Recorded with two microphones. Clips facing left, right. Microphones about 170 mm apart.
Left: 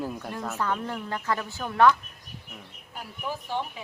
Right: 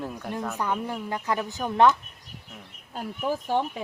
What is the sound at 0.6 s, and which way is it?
A woman's voice, 15° right (ahead or behind).